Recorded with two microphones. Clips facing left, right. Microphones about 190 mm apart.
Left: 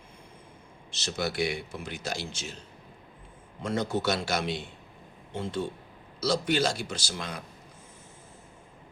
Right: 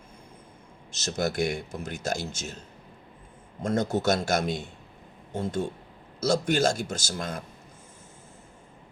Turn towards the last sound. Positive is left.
turn(degrees=-45)  # may be behind; listen again after turning